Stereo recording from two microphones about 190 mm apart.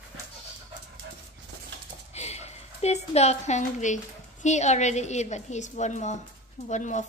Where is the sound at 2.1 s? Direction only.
35° left (ahead or behind).